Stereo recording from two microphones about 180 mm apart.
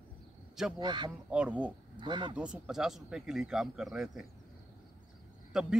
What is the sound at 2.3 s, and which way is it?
Speech, 5° right (ahead or behind).